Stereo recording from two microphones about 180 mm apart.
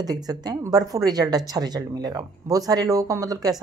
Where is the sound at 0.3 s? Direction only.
20° right (ahead or behind).